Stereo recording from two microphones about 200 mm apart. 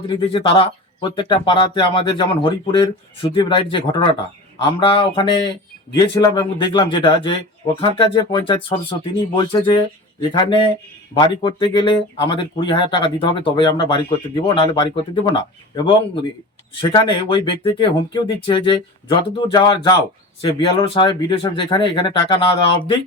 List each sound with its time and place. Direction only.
0.1 s speech: 25° left (ahead or behind)